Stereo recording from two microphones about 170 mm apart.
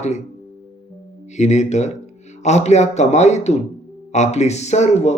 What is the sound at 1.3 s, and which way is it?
Speech, 45° left (ahead or behind).